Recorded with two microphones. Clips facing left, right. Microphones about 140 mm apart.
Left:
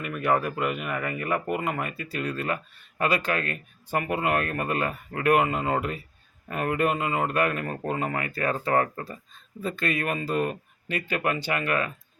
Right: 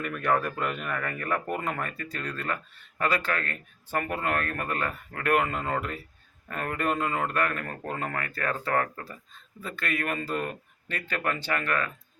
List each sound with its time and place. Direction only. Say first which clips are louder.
0.0 s speech: left 2 dB; 5° left (ahead or behind)